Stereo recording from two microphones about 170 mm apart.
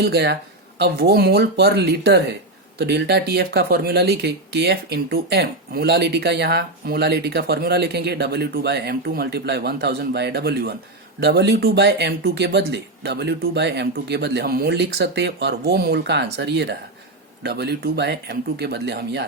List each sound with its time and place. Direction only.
0.0 s speech: 75° right (ahead or behind); by 16.7 s 90° right
17.4 s speech: 75° right (ahead or behind)